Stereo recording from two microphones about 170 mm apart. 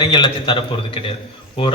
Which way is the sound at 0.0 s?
30° left (ahead or behind).